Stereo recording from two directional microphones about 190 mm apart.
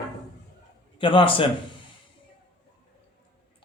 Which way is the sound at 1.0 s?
25° left (ahead or behind).